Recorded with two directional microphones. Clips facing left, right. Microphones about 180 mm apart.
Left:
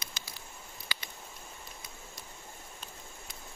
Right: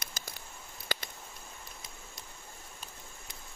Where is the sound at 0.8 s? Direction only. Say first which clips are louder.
Right 7 dB; 45° right (ahead or behind).